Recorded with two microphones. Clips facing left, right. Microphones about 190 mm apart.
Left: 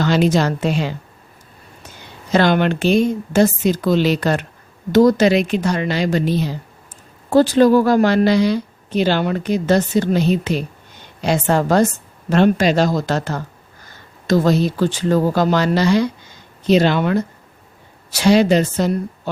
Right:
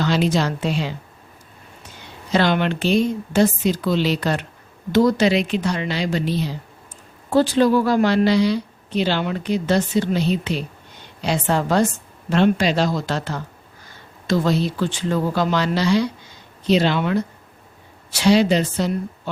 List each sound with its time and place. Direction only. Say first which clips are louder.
0.0 s a woman's voice: left 4 dB; 50° left (ahead or behind)
2.3 s a woman's voice: left 4 dB; 50° left (ahead or behind)